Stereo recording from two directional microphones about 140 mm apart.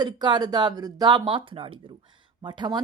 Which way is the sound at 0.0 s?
30° right (ahead or behind).